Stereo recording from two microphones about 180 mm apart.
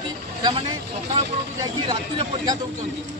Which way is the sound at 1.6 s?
20° right (ahead or behind).